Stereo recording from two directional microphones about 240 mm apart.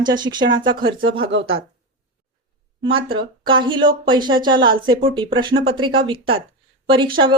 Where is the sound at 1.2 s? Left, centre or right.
Right.